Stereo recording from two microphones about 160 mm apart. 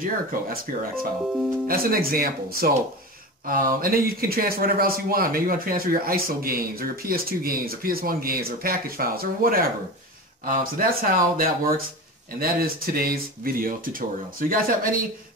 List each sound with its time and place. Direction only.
0.0 s speech: 65° right (ahead or behind)